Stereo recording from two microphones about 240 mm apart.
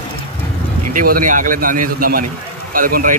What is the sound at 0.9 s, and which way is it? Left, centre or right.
A man's voice, right.